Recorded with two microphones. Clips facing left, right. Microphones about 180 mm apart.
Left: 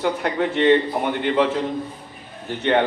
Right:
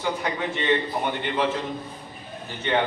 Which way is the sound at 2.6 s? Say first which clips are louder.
Left 5 dB; 60° left (ahead or behind).